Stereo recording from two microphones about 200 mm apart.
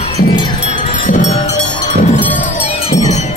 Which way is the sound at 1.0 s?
35° left (ahead or behind).